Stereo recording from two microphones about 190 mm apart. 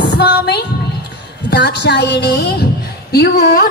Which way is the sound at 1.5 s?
60° left (ahead or behind).